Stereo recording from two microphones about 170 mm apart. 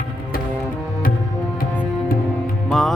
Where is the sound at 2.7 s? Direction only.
5° left (ahead or behind).